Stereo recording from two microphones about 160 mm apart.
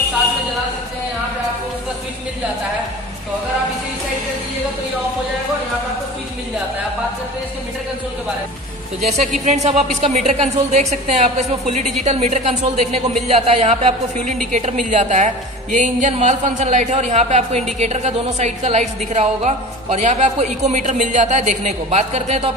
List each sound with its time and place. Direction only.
9.0 s a woman's voice: 45° right (ahead or behind)